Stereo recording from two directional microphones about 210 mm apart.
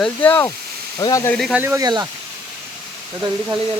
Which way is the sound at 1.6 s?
15° right (ahead or behind).